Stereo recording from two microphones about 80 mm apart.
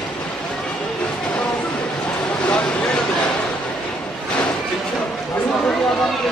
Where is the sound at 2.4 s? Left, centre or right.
Centre.